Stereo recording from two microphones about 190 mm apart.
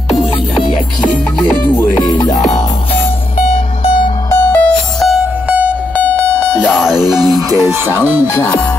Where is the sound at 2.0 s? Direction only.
20° left (ahead or behind).